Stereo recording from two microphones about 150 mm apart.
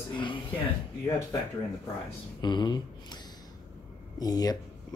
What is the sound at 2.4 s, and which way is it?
Speech, 30° left (ahead or behind).